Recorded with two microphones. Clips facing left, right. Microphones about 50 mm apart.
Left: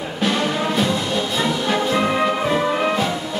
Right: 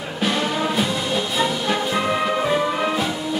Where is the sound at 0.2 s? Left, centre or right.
Centre.